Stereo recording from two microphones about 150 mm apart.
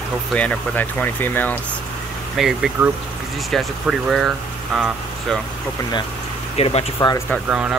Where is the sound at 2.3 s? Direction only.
Centre (ahead or behind).